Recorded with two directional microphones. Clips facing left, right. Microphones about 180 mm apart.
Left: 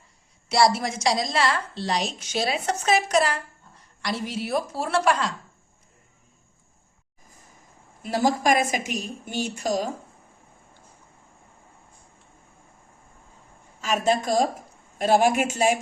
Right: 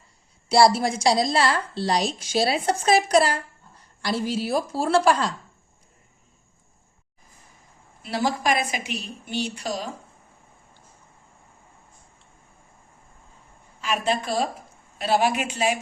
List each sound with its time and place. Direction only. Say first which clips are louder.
0.4 s a woman's voice: right 3 dB; 30° right (ahead or behind)
8.0 s a woman's voice: left 2 dB; 45° left (ahead or behind)
13.8 s a woman's voice: left 2 dB; 45° left (ahead or behind)